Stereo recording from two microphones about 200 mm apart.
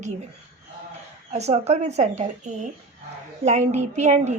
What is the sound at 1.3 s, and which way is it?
A woman's voice, 35° right (ahead or behind).